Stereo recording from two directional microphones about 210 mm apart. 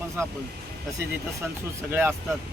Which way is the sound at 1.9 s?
10° right (ahead or behind).